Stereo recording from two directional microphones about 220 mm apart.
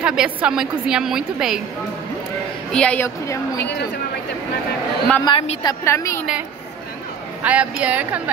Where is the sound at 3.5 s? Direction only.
50° left (ahead or behind).